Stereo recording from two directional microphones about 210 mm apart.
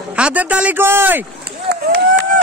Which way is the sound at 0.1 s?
5° right (ahead or behind).